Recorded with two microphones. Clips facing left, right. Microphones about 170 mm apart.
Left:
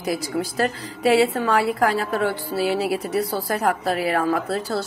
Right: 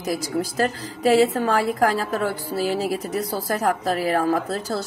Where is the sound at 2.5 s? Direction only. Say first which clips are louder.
Left 1 dB; centre (ahead or behind).